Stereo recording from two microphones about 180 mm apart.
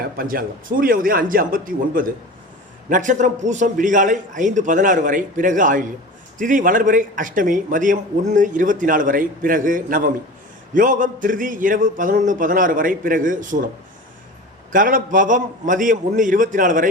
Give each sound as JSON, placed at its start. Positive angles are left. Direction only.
{"t": 0.0, "sound": "a man's voice", "side_deg": -55}
{"t": 14.7, "sound": "a man's voice", "side_deg": -50}